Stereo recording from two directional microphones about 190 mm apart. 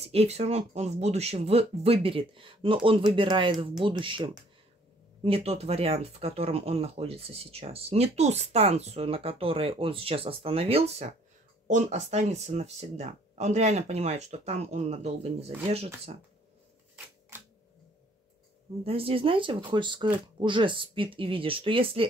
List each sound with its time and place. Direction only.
0.1 s speech: 35° right (ahead or behind)
18.9 s speech: 30° right (ahead or behind)